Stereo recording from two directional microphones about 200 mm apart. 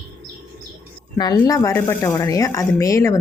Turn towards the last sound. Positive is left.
turn(degrees=15)  # may be behind; listen again after turning